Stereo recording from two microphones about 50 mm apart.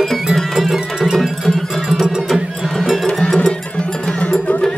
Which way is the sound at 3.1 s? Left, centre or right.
Centre.